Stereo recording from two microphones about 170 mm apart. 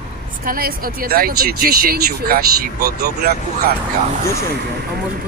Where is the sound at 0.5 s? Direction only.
60° right (ahead or behind).